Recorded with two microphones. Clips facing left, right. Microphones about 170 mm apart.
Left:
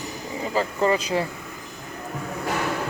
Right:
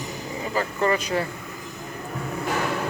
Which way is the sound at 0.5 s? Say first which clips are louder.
Left 2 dB; 20° left (ahead or behind).